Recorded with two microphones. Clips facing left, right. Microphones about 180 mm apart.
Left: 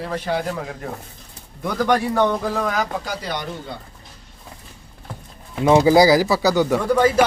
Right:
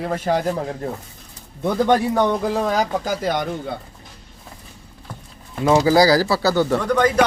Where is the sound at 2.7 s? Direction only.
35° right (ahead or behind).